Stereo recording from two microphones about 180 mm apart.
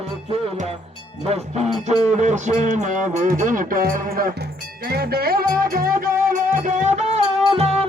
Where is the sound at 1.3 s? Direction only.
35° right (ahead or behind).